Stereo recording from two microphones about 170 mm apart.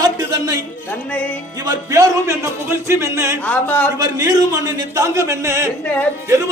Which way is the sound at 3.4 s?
10° left (ahead or behind).